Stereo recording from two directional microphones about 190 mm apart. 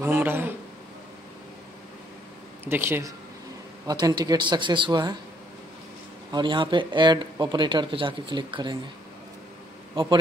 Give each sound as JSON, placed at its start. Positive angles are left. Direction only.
{"t": 0.0, "sound": "speech", "side_deg": -10}
{"t": 2.6, "sound": "speech", "side_deg": -10}
{"t": 6.3, "sound": "speech", "side_deg": -25}
{"t": 10.0, "sound": "speech", "side_deg": -30}